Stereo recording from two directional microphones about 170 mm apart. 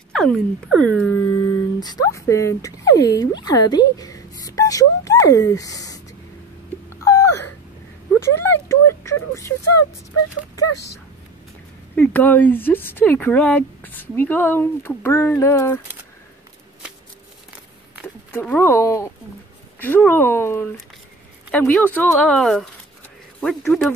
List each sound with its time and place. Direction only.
0.1 s speech: 5° left (ahead or behind)
1.3 s speech: 25° left (ahead or behind)
3.4 s a sound: 25° left (ahead or behind)
11.9 s speech: 10° left (ahead or behind)
18.0 s speech: 10° left (ahead or behind)